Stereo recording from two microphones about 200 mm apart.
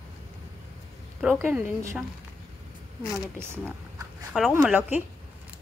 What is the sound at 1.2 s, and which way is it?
Speech, 10° right (ahead or behind).